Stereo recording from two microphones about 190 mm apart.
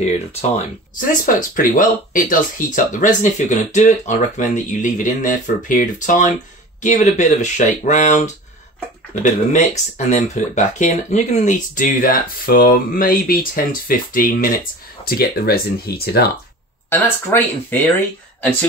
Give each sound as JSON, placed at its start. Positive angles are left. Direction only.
{"t": 1.2, "sound": "speech", "side_deg": 45}
{"t": 16.9, "sound": "speech", "side_deg": 10}